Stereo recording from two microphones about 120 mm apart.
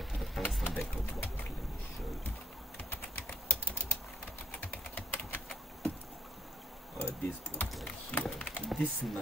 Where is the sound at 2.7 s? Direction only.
15° left (ahead or behind).